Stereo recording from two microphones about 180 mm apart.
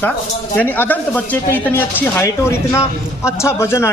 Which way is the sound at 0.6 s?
10° left (ahead or behind).